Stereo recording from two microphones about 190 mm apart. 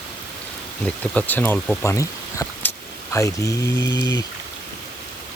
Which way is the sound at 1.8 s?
15° left (ahead or behind).